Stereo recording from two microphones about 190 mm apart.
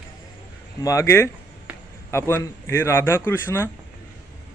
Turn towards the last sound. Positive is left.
turn(degrees=10)  # may be behind; listen again after turning